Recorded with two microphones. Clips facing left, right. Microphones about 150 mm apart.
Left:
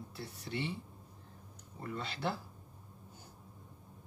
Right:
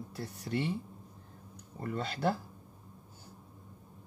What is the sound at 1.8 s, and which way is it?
Speech, 45° right (ahead or behind).